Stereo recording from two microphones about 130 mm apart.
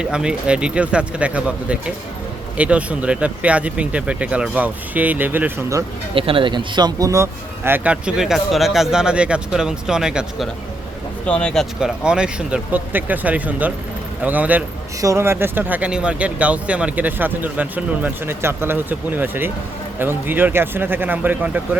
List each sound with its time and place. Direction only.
0.0 s speech: 5° right (ahead or behind)
6.1 s speech: 45° right (ahead or behind); by 10.5 s 5° right (ahead or behind)
11.3 s speech: 10° left (ahead or behind)
11.8 s speech: 5° right (ahead or behind)